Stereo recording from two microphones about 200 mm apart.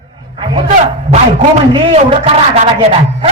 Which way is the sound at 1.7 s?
30° right (ahead or behind).